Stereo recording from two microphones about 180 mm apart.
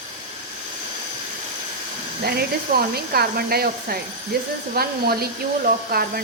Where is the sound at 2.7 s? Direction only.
60° right (ahead or behind).